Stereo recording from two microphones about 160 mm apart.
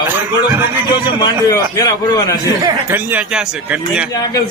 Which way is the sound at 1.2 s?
25° left (ahead or behind).